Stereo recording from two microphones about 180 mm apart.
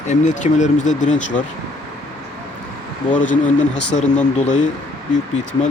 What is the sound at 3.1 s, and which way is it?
Speech, 45° left (ahead or behind).